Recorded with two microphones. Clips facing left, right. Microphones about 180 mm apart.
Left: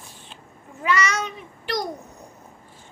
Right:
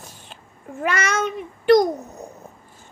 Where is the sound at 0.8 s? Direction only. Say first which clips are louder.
Right 1 dB; 50° right (ahead or behind).